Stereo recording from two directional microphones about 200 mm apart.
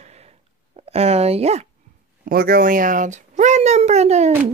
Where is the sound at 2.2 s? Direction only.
50° right (ahead or behind).